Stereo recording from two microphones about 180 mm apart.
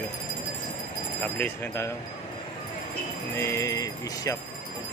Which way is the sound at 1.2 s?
10° left (ahead or behind).